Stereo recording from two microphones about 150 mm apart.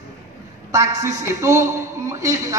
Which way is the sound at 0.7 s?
25° right (ahead or behind).